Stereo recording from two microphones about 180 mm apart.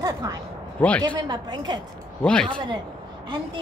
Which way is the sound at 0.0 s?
20° right (ahead or behind).